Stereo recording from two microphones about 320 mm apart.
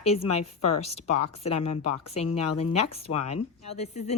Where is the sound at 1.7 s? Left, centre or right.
Left.